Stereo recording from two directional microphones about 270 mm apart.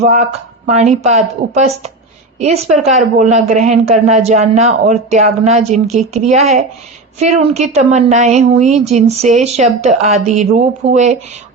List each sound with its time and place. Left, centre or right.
0.0 s a woman's voice: right